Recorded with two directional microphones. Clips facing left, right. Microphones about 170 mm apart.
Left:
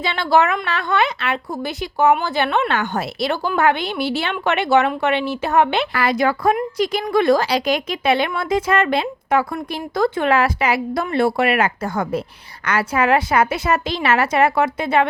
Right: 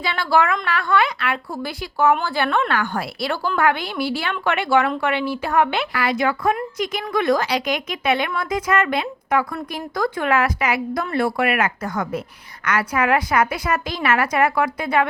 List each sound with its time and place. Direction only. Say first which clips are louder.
0.0 s speech: left 2 dB; 25° left (ahead or behind)
5.9 s speech: left 3 dB; 45° left (ahead or behind); by 15.0 s 25° left (ahead or behind)